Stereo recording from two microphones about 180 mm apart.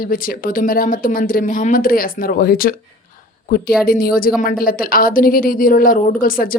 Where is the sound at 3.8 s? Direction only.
55° left (ahead or behind).